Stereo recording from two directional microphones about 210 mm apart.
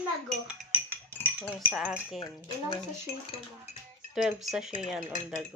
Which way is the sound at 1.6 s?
5° right (ahead or behind).